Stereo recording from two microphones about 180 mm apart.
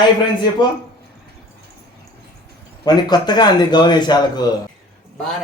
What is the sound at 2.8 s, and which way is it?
Speech, 20° left (ahead or behind).